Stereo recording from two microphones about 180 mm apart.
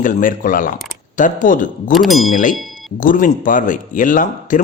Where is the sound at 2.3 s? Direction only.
45° left (ahead or behind).